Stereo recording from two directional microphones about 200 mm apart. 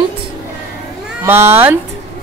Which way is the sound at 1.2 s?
10° right (ahead or behind).